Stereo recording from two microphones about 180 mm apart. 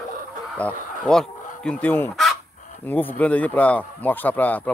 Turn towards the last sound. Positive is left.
turn(degrees=10)  # may be behind; listen again after turning